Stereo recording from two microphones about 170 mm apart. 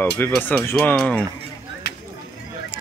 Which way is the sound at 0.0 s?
10° left (ahead or behind).